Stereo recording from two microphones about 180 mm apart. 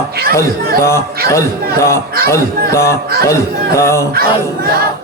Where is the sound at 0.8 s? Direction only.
15° left (ahead or behind).